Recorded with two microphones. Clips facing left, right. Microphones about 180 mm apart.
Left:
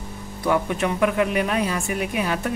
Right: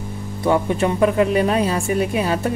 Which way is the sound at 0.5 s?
30° right (ahead or behind).